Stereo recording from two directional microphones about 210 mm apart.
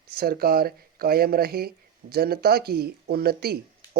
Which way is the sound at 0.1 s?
45° right (ahead or behind).